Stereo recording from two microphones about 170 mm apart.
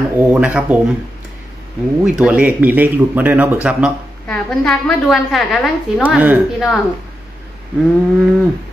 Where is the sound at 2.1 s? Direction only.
5° right (ahead or behind).